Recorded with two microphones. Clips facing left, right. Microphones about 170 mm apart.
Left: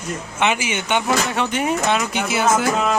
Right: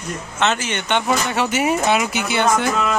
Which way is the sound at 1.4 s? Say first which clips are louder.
Right 2 dB; 5° right (ahead or behind).